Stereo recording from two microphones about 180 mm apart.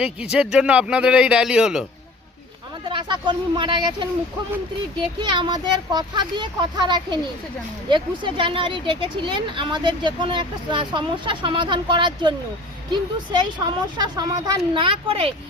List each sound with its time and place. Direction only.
0.0 s a man's voice: 5° right (ahead or behind)
2.9 s speech: 25° right (ahead or behind)
5.2 s speech: 25° right (ahead or behind)